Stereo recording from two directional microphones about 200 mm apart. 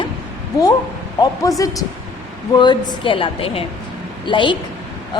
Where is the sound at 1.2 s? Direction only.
15° left (ahead or behind).